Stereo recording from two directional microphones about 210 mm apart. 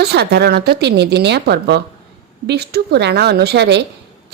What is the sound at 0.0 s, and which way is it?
A woman's voice, 50° right (ahead or behind).